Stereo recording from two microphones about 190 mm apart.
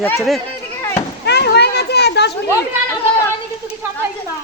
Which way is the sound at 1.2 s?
60° left (ahead or behind).